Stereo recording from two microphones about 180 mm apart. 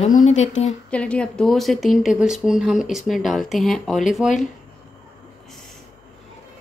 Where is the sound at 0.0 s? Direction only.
40° left (ahead or behind).